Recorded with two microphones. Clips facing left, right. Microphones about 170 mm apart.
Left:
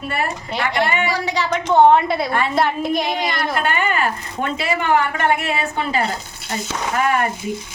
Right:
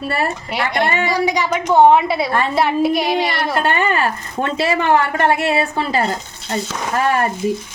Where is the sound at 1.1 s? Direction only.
15° right (ahead or behind).